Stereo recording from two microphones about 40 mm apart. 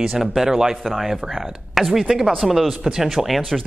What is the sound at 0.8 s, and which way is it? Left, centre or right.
Speech, centre.